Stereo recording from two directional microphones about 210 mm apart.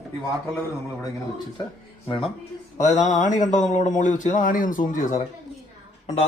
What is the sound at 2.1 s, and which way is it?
A man's voice, 25° left (ahead or behind).